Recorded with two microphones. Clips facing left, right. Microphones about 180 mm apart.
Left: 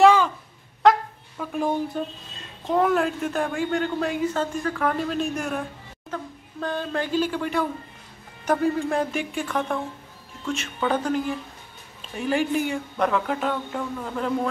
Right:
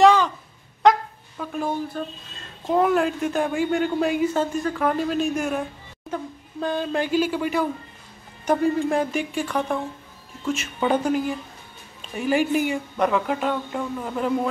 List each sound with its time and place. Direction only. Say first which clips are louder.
0.0 s a sound: even; 5° left (ahead or behind)
1.4 s speech: left 2 dB; 15° left (ahead or behind)
2.6 s speech: right 1 dB; 5° right (ahead or behind)
6.0 s speech: right 3 dB; 15° right (ahead or behind)